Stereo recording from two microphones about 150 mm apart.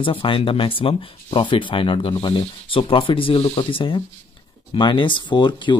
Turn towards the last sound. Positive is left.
turn(degrees=30)  # may be behind; listen again after turning